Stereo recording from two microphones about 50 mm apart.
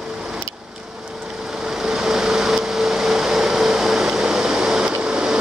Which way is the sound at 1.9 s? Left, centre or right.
Centre.